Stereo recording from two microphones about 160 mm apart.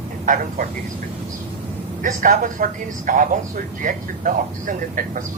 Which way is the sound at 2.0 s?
55° right (ahead or behind).